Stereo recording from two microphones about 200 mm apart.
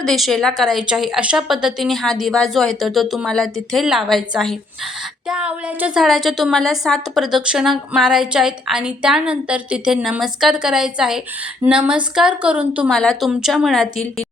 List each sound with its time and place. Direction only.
0.0 s a woman's voice: centre (ahead or behind)